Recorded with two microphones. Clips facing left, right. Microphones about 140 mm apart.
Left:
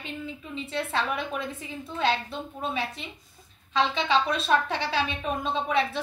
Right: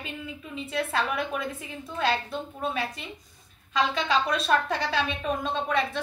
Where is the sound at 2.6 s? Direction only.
Centre (ahead or behind).